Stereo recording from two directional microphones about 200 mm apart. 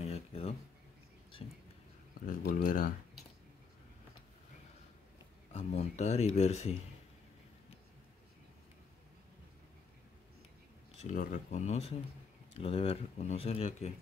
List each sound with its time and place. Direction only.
0.0 s a sound: 30° left (ahead or behind)
2.1 s speech: 45° left (ahead or behind)
5.5 s speech: 30° left (ahead or behind)
11.0 s speech: 40° left (ahead or behind)